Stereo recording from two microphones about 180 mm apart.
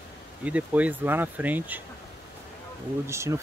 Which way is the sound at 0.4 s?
5° right (ahead or behind).